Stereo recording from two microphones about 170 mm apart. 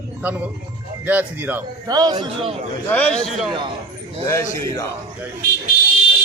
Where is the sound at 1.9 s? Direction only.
25° right (ahead or behind).